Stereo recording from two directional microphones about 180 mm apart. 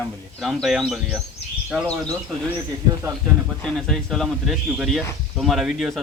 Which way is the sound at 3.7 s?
Centre (ahead or behind).